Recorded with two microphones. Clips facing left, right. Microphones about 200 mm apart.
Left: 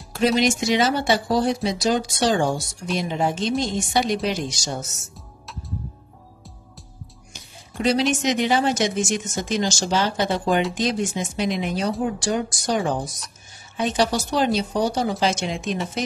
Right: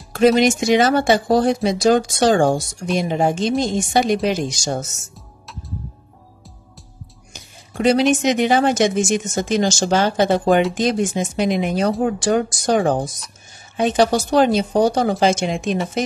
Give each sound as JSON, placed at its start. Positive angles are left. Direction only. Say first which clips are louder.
{"t": 0.4, "sound": "speech", "louder": "right 5 dB", "side_deg": -50}
{"t": 7.7, "sound": "speech", "louder": "right 5 dB", "side_deg": -55}